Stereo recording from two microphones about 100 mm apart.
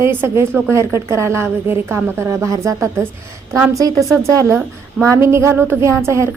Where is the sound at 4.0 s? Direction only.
30° right (ahead or behind).